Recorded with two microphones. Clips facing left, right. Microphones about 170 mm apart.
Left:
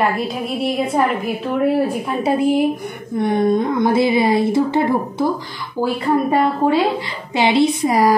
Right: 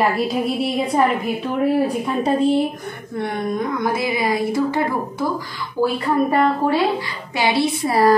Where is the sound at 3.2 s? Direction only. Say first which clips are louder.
Left 7 dB; 20° left (ahead or behind).